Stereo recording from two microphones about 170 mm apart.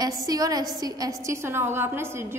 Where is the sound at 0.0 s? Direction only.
20° right (ahead or behind).